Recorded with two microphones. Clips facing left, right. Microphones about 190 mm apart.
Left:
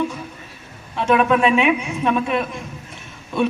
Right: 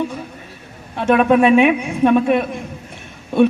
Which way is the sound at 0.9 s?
50° right (ahead or behind).